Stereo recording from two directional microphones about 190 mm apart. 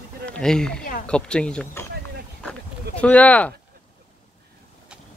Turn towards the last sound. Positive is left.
turn(degrees=5)  # may be behind; listen again after turning